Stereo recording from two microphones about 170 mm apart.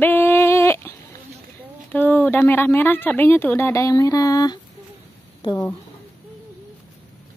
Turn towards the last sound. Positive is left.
turn(degrees=25)  # may be behind; listen again after turning